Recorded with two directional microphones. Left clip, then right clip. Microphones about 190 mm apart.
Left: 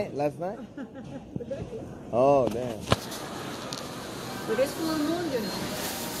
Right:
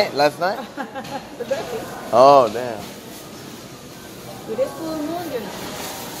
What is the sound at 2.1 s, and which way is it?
Speech, 45° right (ahead or behind).